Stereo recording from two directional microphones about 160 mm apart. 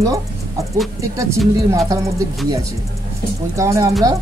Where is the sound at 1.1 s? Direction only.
20° right (ahead or behind).